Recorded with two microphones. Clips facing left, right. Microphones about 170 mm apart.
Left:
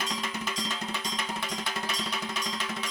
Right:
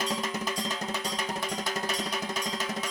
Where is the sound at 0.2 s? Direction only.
40° right (ahead or behind).